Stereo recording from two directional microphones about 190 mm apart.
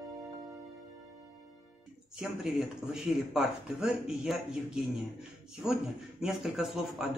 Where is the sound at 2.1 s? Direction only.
Centre (ahead or behind).